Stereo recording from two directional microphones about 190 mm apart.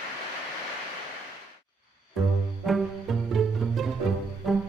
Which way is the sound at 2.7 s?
Centre (ahead or behind).